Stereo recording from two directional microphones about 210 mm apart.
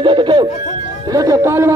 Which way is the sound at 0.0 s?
20° right (ahead or behind).